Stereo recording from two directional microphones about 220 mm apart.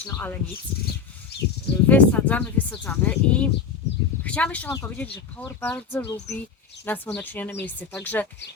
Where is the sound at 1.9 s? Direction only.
5° left (ahead or behind).